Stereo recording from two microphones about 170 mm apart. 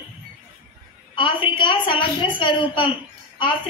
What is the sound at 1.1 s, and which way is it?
A woman's voice, 30° left (ahead or behind).